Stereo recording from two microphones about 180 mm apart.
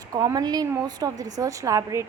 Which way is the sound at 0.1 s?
20° right (ahead or behind).